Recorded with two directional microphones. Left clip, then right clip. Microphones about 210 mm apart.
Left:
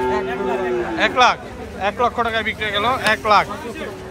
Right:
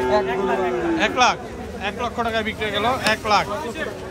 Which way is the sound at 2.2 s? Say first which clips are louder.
Left 2 dB; 15° right (ahead or behind).